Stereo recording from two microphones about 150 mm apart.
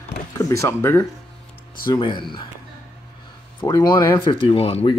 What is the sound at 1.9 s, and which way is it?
Speech, 30° left (ahead or behind).